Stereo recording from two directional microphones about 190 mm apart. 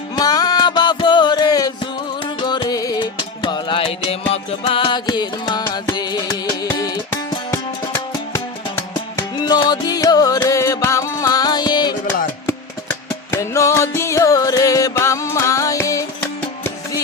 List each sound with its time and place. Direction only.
0.2 s music: 20° left (ahead or behind)
9.1 s music: 20° left (ahead or behind)